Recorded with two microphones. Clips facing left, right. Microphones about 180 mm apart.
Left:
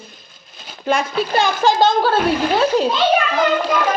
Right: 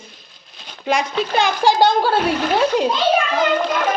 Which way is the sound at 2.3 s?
10° left (ahead or behind).